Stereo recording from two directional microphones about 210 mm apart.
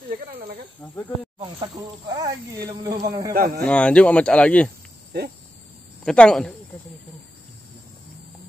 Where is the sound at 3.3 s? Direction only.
45° right (ahead or behind).